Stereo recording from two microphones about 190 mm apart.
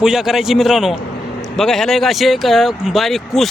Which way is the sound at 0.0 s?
Centre (ahead or behind).